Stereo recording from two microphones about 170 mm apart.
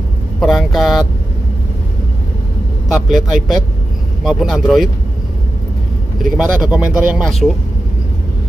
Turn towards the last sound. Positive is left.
turn(degrees=-5)  # may be behind; listen again after turning